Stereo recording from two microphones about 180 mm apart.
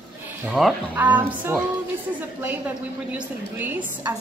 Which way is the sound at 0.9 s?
10° right (ahead or behind).